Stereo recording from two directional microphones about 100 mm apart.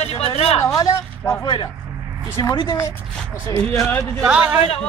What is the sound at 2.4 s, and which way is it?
Speech, 45° left (ahead or behind).